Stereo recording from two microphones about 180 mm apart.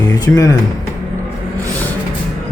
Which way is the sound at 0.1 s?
20° left (ahead or behind).